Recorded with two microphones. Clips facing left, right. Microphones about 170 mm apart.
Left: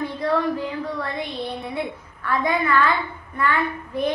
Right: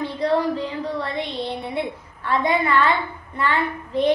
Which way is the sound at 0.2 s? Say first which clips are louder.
Right 2 dB; 25° right (ahead or behind).